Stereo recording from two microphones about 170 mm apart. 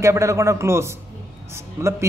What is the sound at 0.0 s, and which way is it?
A man's voice, 15° right (ahead or behind).